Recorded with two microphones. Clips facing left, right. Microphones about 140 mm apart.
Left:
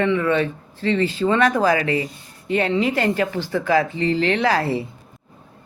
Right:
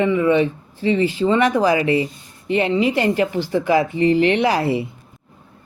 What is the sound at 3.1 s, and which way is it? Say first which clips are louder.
Speech: right 3 dB; 15° right (ahead or behind).